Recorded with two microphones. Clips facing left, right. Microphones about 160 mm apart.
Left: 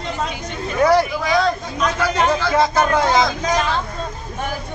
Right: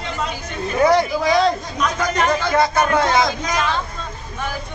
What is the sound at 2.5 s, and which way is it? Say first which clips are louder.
Speech: even; 5° left (ahead or behind).